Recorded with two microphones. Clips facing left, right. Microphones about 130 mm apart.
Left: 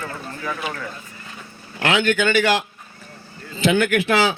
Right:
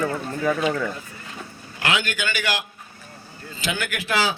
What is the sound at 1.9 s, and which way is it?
Speech, 25° left (ahead or behind).